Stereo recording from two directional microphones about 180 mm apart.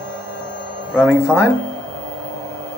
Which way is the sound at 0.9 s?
5° right (ahead or behind).